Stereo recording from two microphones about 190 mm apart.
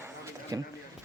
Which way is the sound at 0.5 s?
20° right (ahead or behind).